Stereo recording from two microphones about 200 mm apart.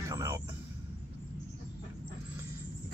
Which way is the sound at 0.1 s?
15° right (ahead or behind).